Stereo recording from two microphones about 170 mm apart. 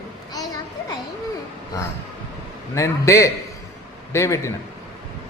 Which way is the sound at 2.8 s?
20° left (ahead or behind).